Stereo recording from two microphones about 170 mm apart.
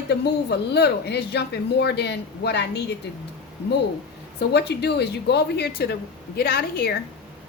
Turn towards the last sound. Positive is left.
turn(degrees=65)  # may be behind; listen again after turning